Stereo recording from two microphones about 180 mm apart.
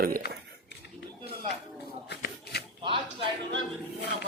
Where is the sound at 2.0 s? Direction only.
65° left (ahead or behind).